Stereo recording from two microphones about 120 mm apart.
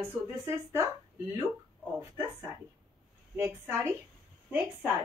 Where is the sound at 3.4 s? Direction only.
20° right (ahead or behind).